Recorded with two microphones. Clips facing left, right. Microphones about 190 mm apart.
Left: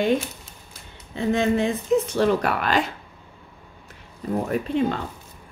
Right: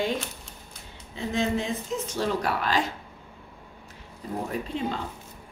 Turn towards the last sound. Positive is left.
turn(degrees=60)  # may be behind; listen again after turning